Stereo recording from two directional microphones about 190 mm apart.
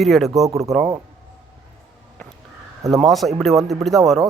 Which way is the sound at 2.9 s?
Centre (ahead or behind).